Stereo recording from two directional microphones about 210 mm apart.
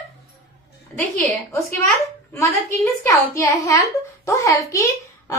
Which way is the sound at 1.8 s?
15° left (ahead or behind).